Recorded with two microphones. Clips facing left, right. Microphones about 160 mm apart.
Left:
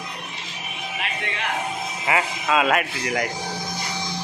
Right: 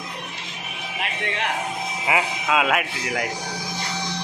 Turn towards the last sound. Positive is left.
turn(degrees=0)  # may be behind; listen again after turning